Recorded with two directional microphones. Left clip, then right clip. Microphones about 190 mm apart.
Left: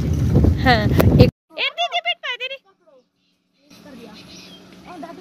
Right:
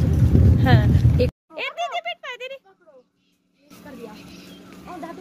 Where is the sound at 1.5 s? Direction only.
5° right (ahead or behind).